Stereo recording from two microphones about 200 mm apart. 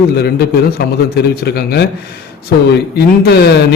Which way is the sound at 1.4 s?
55° left (ahead or behind).